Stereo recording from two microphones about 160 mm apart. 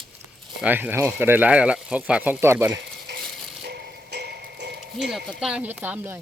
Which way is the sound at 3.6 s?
85° right.